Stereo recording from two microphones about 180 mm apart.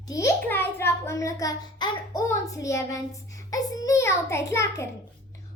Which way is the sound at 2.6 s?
15° left (ahead or behind).